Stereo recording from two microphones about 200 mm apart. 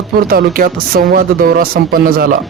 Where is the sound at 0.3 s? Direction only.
45° right (ahead or behind).